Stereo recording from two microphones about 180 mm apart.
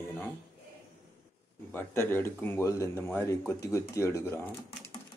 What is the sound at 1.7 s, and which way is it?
Speech, 15° left (ahead or behind).